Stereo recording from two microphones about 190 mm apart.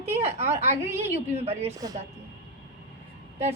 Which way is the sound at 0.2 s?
35° right (ahead or behind).